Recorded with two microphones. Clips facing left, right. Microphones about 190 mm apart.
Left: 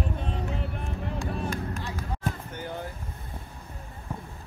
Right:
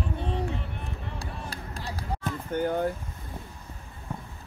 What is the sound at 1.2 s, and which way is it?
Vehicle, 35° right (ahead or behind).